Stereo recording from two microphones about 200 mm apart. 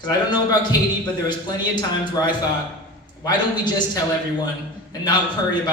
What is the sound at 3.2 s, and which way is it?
Speech, 20° left (ahead or behind).